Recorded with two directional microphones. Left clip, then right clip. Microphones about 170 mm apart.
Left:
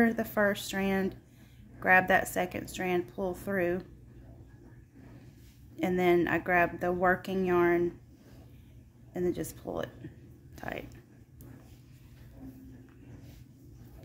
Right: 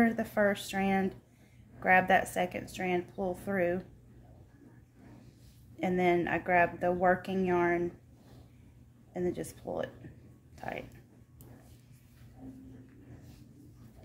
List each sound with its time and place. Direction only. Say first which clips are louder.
0.0 s speech: left 1 dB; 20° left (ahead or behind)
5.8 s speech: left 2 dB; 20° left (ahead or behind)
9.1 s speech: left 2 dB; 20° left (ahead or behind)
10.5 s a sound: left 1 dB; 20° left (ahead or behind)